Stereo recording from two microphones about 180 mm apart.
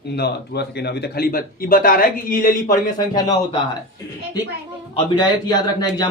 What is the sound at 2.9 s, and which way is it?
Speech, 25° left (ahead or behind).